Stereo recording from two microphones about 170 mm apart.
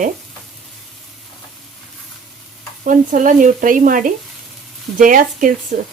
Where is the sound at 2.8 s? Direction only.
50° right (ahead or behind).